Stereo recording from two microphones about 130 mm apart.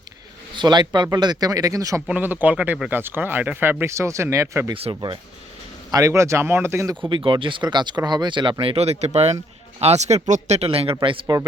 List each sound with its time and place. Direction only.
0.5 s speech: 35° right (ahead or behind)
2.0 s speech: 15° right (ahead or behind)
4.7 s speech: 40° right (ahead or behind)
5.9 s speech: 25° right (ahead or behind)
7.1 s speech: 40° right (ahead or behind)
8.6 s speech: 50° right (ahead or behind)